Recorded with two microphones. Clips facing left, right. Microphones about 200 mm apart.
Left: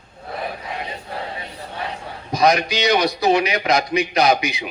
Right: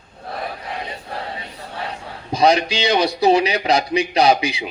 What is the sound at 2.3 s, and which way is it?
A man's voice, 30° right (ahead or behind).